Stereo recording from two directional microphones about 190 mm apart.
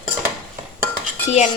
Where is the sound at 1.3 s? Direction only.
35° left (ahead or behind).